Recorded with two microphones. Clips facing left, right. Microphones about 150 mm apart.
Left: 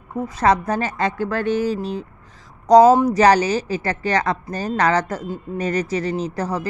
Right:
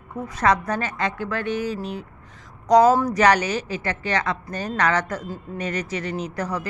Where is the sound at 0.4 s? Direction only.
30° left (ahead or behind).